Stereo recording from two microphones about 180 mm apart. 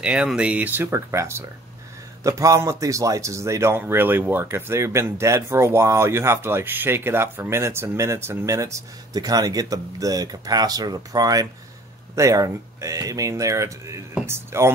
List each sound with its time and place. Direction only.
0.0 s speech: 5° right (ahead or behind)